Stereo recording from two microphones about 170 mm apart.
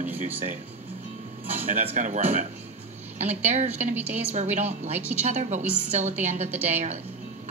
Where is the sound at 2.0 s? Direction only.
45° right (ahead or behind).